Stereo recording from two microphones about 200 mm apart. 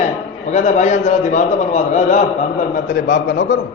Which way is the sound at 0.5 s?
35° left (ahead or behind).